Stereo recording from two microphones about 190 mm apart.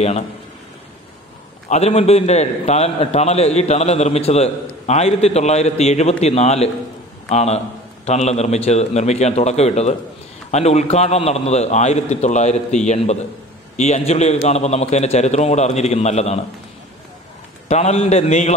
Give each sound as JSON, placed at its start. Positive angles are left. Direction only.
{"t": 1.7, "sound": "a man's voice", "side_deg": 35}
{"t": 17.6, "sound": "a man's voice", "side_deg": 35}